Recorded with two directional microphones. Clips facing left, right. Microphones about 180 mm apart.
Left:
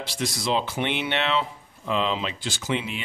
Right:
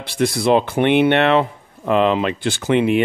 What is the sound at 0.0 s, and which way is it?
Speech, 60° right (ahead or behind).